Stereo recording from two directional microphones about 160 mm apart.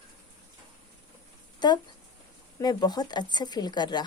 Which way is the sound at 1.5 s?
25° left (ahead or behind).